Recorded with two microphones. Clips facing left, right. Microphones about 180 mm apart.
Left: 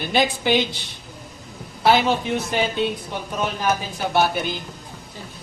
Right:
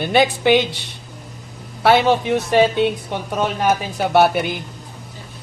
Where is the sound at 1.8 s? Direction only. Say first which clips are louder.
Right 4 dB; 70° right (ahead or behind).